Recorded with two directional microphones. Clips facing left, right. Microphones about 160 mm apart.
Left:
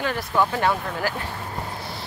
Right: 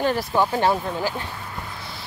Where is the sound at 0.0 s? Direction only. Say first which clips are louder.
Right 2 dB; 30° right (ahead or behind).